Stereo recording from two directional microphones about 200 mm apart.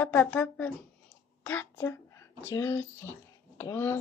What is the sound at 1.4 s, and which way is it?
A woman's voice, 10° left (ahead or behind).